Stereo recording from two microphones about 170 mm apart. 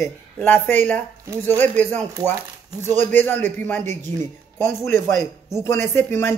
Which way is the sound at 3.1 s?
10° left (ahead or behind).